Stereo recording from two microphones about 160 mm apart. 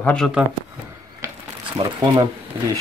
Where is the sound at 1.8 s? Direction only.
30° right (ahead or behind).